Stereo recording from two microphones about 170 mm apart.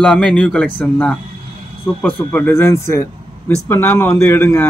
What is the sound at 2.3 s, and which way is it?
Speech, 10° left (ahead or behind).